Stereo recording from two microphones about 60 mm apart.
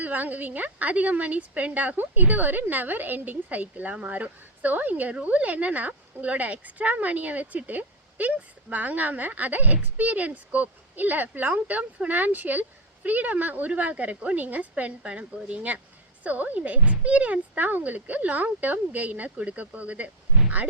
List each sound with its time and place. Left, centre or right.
0.0 s speech: right